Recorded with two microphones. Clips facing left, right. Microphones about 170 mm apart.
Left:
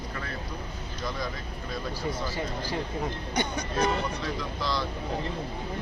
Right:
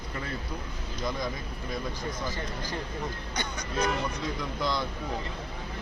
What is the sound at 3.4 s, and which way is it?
Speech, 25° left (ahead or behind).